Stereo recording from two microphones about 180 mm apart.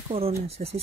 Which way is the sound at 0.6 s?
50° right (ahead or behind).